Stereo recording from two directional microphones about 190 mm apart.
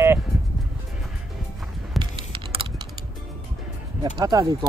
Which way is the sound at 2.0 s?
25° right (ahead or behind).